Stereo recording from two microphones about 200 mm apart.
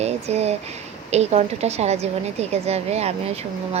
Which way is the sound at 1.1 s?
30° right (ahead or behind).